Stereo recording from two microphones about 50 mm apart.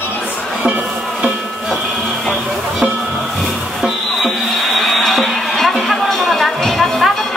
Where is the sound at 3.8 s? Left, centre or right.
Centre.